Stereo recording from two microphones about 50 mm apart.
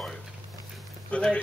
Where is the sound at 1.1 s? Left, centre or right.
Left.